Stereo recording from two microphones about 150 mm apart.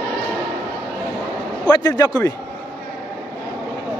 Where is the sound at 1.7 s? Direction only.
25° left (ahead or behind).